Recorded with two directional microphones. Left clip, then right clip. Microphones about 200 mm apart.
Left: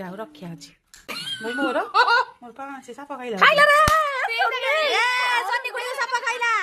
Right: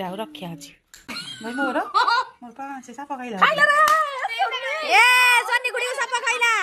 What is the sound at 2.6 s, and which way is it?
Speech, 30° left (ahead or behind).